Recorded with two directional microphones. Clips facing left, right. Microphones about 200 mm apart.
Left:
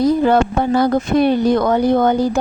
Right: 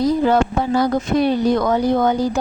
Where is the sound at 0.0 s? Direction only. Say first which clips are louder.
Left 2 dB; 55° left (ahead or behind).